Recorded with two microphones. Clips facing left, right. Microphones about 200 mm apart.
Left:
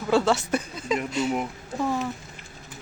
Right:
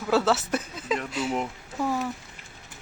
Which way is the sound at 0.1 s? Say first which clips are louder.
Left 1 dB; 5° right (ahead or behind).